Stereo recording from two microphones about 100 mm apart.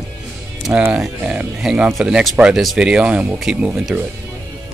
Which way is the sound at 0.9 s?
10° right (ahead or behind).